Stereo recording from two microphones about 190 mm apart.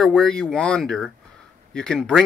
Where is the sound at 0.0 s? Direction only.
5° left (ahead or behind).